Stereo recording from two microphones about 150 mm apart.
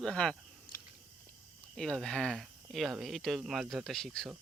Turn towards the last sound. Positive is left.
turn(degrees=0)  # may be behind; listen again after turning